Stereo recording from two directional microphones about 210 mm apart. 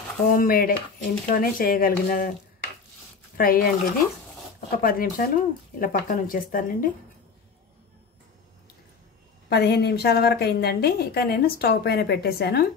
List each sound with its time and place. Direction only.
0.3 s a woman's voice: 45° left (ahead or behind)
3.3 s a woman's voice: 45° left (ahead or behind)
9.5 s a woman's voice: 50° left (ahead or behind)